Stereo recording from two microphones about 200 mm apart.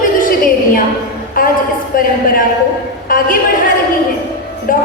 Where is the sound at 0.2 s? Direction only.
45° left (ahead or behind).